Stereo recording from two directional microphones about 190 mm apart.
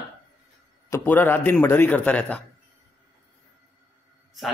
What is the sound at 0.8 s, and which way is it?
A man's voice, 10° left (ahead or behind).